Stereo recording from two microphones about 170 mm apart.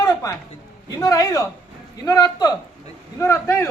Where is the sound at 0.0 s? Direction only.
20° left (ahead or behind).